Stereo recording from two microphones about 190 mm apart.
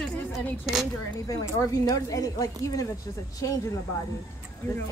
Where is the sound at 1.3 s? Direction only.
15° left (ahead or behind).